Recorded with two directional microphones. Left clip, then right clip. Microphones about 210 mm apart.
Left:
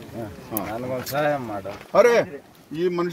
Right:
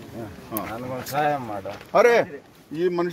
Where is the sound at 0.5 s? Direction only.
40° left (ahead or behind).